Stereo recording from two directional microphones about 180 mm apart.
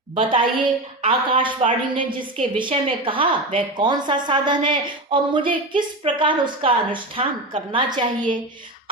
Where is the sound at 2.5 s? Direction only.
30° right (ahead or behind).